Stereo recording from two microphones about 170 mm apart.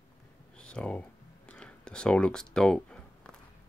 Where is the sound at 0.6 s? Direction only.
5° left (ahead or behind).